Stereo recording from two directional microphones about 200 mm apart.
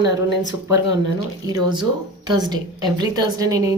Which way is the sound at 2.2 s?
20° right (ahead or behind).